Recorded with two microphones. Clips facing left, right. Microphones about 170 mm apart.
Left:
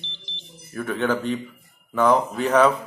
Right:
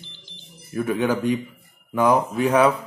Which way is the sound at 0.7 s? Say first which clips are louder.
Right 2 dB; 10° right (ahead or behind).